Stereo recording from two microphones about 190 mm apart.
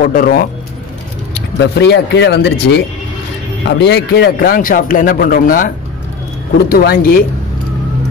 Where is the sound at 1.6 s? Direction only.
65° left (ahead or behind).